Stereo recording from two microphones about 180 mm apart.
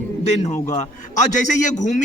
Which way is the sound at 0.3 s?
40° left (ahead or behind).